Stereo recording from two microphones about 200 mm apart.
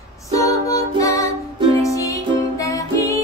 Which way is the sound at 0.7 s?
15° left (ahead or behind).